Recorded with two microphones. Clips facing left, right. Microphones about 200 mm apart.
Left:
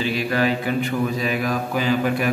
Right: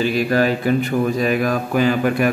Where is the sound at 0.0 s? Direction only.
45° right (ahead or behind).